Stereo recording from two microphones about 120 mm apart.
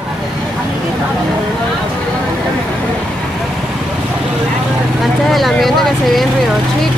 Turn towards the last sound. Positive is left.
turn(degrees=0)  # may be behind; listen again after turning